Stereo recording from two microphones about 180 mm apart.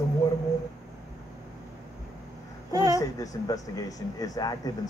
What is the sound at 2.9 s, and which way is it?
Speech, 20° left (ahead or behind).